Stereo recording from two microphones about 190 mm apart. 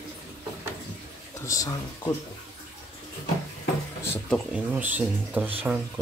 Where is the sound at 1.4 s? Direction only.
20° left (ahead or behind).